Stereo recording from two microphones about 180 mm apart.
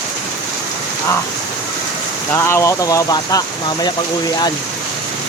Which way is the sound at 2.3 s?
15° left (ahead or behind).